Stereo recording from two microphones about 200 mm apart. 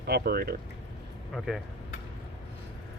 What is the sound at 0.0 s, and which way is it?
Speech, 50° right (ahead or behind).